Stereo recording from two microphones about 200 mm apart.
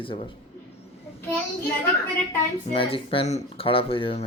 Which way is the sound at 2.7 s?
25° left (ahead or behind).